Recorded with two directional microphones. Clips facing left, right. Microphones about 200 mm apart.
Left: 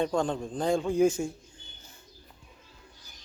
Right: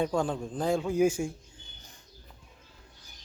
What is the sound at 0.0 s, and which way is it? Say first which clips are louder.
Speech: left 1 dB; 5° right (ahead or behind).